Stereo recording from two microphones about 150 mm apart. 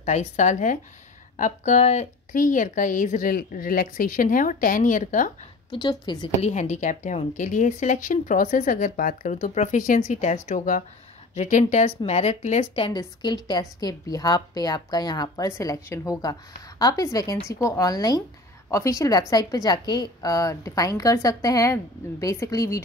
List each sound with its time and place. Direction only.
0.0 s speech: 50° left (ahead or behind)
5.7 s a woman's voice: 30° left (ahead or behind)
6.4 s a woman's voice: 55° left (ahead or behind)
12.7 s a woman's voice: 30° left (ahead or behind)